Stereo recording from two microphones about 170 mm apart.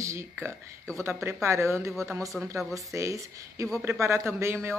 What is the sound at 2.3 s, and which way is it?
Speech, 5° right (ahead or behind).